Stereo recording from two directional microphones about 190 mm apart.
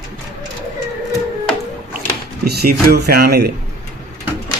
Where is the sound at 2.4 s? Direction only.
55° right (ahead or behind).